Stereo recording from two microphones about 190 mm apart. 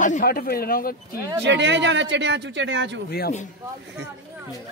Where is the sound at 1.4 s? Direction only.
70° right (ahead or behind).